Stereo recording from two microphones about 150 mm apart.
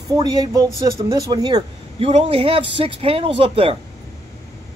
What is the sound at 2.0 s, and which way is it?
Speech, 40° right (ahead or behind).